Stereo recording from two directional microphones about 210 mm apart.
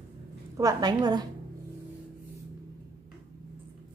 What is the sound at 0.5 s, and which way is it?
Speech, 20° right (ahead or behind).